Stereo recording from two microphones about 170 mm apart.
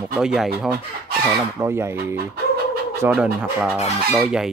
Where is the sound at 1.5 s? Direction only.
15° right (ahead or behind).